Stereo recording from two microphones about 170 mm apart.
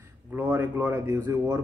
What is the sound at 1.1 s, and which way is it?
Speech, 25° right (ahead or behind).